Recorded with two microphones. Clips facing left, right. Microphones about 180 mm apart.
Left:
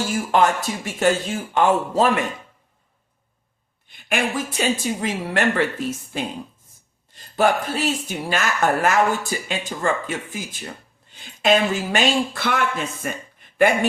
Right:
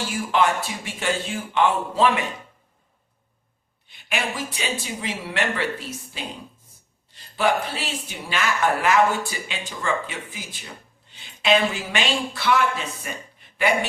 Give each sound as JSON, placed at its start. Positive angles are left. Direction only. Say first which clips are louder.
{"t": 0.3, "sound": "speech", "louder": "left 2 dB", "side_deg": 45}
{"t": 3.8, "sound": "speech", "louder": "left 4 dB", "side_deg": 50}
{"t": 7.3, "sound": "speech", "louder": "left 3 dB", "side_deg": 45}